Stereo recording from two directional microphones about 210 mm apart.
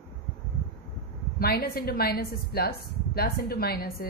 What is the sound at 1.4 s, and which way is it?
A woman's voice, 50° left (ahead or behind).